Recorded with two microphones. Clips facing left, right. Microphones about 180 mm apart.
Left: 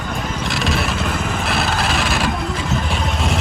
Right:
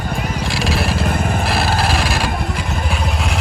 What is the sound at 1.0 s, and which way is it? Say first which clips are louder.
Vehicle: right 3 dB; 50° right (ahead or behind).